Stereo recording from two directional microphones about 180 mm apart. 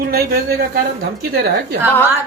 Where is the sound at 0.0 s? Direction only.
60° right (ahead or behind).